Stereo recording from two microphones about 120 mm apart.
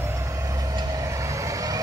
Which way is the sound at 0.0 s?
25° right (ahead or behind).